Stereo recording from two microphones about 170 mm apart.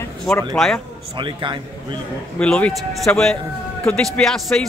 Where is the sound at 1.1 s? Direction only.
30° right (ahead or behind).